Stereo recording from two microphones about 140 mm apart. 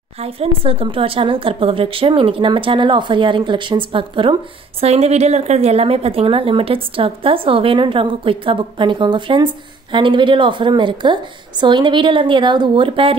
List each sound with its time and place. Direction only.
0.2 s speech: 45° right (ahead or behind)